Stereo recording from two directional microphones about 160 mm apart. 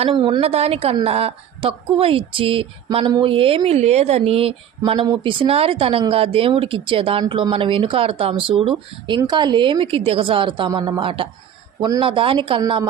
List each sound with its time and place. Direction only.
0.0 s speech: 30° right (ahead or behind)